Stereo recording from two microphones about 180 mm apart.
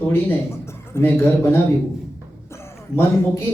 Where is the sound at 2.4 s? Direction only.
15° left (ahead or behind).